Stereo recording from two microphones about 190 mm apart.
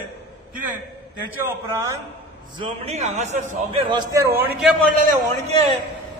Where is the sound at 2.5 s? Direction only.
30° right (ahead or behind).